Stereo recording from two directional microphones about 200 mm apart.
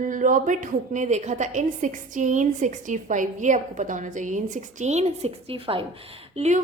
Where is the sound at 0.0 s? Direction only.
40° right (ahead or behind).